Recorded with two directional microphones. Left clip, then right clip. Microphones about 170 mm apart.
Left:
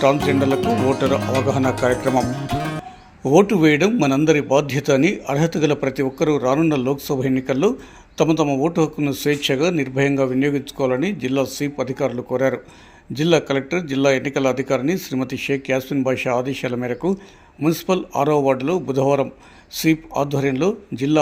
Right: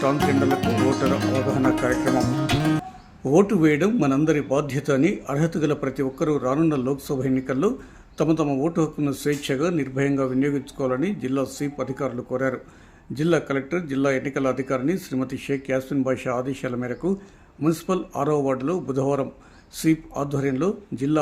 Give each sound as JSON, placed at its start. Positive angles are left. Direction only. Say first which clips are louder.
{"t": 0.0, "sound": "a man's voice", "louder": "left 4 dB", "side_deg": 10}
{"t": 2.5, "sound": "music", "louder": "right 2 dB", "side_deg": 0}
{"t": 3.2, "sound": "a man's voice", "louder": "left 4 dB", "side_deg": 5}